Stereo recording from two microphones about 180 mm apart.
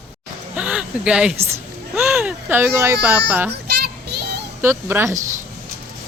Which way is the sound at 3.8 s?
65° right (ahead or behind).